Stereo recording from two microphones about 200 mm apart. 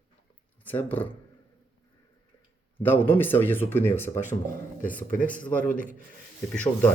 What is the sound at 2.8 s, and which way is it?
Speech, 10° left (ahead or behind).